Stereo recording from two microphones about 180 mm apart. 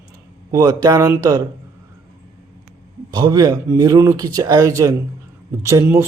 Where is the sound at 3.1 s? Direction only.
20° right (ahead or behind).